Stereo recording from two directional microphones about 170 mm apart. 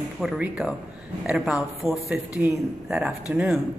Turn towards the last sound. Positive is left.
turn(degrees=-5)  # may be behind; listen again after turning